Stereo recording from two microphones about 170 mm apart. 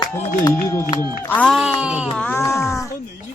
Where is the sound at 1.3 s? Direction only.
5° left (ahead or behind).